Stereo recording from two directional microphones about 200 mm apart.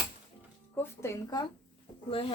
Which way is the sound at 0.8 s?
15° left (ahead or behind).